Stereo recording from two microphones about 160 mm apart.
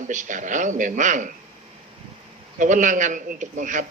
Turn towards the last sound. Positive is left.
turn(degrees=-50)  # may be behind; listen again after turning